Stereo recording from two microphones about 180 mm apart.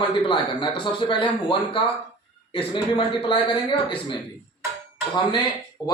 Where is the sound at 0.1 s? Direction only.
25° left (ahead or behind).